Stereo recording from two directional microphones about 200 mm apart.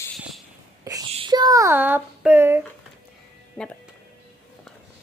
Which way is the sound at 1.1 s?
20° right (ahead or behind).